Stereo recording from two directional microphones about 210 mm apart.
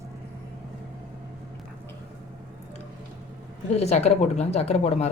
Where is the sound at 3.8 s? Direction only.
30° left (ahead or behind).